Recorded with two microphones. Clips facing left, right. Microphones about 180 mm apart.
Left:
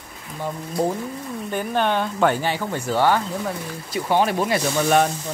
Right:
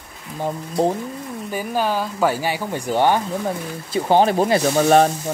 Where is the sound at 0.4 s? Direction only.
30° right (ahead or behind).